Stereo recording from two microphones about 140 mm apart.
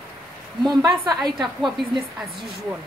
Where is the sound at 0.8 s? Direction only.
30° right (ahead or behind).